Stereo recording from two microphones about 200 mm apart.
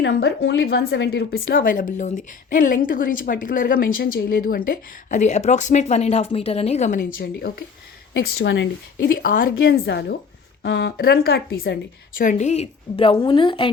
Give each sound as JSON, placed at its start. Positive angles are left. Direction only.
{"t": 0.0, "sound": "speech", "side_deg": 60}
{"t": 8.2, "sound": "a woman's voice", "side_deg": 60}
{"t": 9.4, "sound": "speech", "side_deg": 50}
{"t": 12.2, "sound": "a woman's voice", "side_deg": 40}